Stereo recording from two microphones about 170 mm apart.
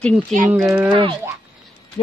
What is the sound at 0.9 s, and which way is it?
Speech, 30° right (ahead or behind).